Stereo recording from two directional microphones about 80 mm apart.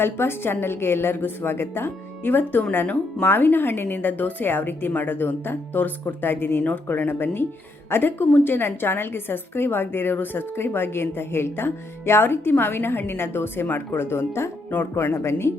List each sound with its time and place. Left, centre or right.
0.0 s a woman's voice: left